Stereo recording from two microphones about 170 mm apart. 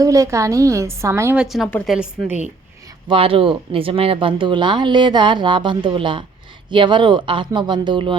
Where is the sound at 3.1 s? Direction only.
30° right (ahead or behind).